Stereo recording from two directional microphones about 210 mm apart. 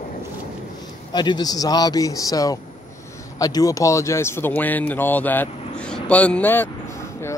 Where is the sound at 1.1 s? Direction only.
20° left (ahead or behind).